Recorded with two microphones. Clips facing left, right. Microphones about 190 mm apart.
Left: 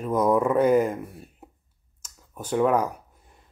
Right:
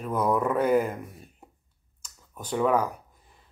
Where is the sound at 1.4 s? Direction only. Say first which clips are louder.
Left 4 dB; 5° left (ahead or behind).